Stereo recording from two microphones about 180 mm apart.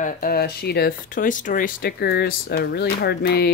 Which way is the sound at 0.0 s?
50° left (ahead or behind).